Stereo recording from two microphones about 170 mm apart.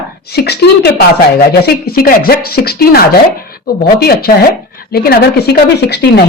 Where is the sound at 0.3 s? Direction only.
70° left (ahead or behind).